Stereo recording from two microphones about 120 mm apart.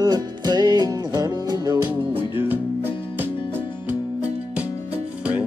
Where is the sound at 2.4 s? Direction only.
15° right (ahead or behind).